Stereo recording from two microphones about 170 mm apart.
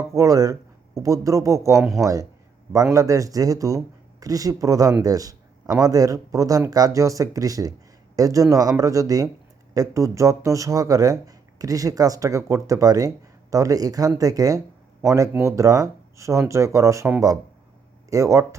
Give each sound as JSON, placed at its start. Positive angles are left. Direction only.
{"t": 0.1, "sound": "speech", "side_deg": -20}